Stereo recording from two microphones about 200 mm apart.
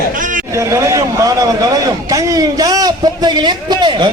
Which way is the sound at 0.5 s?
15° right (ahead or behind).